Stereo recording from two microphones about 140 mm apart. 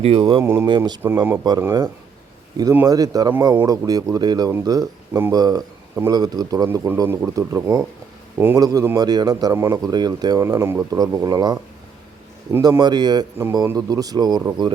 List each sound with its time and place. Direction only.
0.0 s speech: 40° right (ahead or behind)
0.4 s speech: 20° right (ahead or behind)
6.7 s speech: 15° right (ahead or behind)
12.6 s speech: 30° right (ahead or behind)